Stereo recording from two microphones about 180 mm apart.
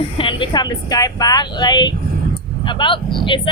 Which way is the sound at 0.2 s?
25° left (ahead or behind).